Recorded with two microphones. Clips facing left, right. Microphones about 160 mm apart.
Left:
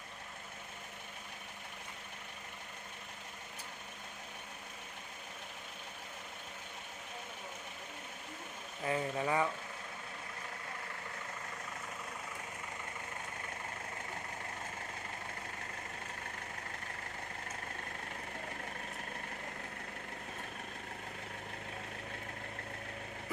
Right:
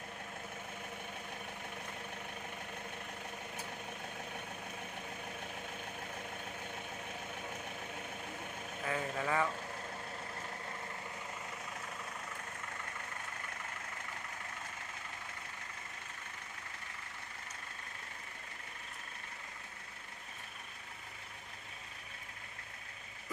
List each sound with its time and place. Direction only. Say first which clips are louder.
8.9 s speech: left 2 dB; 15° left (ahead or behind)